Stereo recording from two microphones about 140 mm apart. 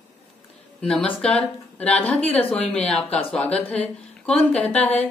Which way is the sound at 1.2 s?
10° left (ahead or behind).